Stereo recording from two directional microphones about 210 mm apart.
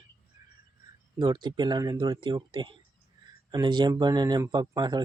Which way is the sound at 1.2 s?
20° right (ahead or behind).